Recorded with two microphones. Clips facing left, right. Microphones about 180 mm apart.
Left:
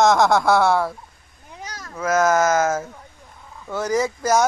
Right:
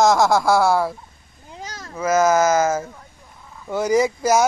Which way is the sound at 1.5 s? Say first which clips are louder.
Right 1 dB; 30° right (ahead or behind).